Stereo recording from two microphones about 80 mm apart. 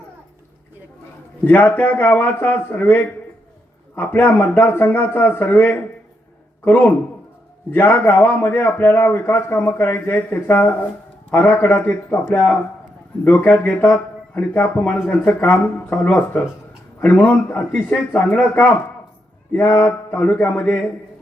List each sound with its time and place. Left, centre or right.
1.5 s a man's voice: left